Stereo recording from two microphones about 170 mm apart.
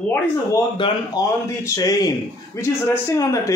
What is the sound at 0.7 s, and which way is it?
A man's voice, 30° left (ahead or behind).